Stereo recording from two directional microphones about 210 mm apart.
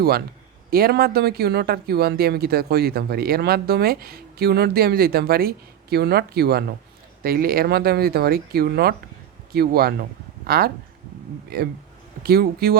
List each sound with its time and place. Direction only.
0.7 s speech: 45° right (ahead or behind)